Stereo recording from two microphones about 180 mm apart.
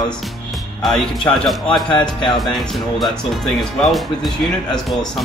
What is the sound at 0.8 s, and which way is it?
Speech, centre (ahead or behind).